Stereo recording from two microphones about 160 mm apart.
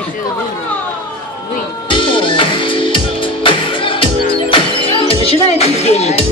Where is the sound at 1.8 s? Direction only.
30° left (ahead or behind).